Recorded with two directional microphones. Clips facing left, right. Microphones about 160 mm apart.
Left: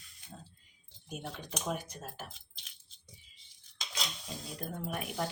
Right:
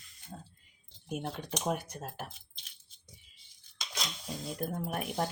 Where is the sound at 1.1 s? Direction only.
55° right (ahead or behind).